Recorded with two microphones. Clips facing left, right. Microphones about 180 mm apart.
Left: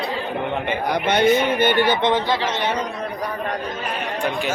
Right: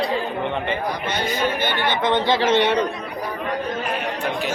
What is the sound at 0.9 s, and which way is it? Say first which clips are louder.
Speech: left 8 dB; 65° left (ahead or behind).